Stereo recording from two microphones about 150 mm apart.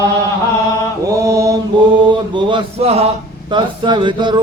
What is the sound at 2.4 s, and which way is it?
Speech, 35° right (ahead or behind).